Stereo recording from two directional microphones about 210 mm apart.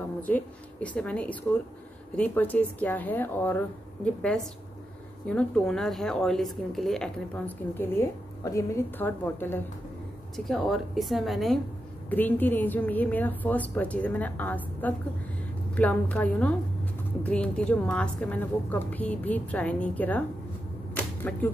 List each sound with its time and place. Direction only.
0.3 s a woman's voice: 5° left (ahead or behind)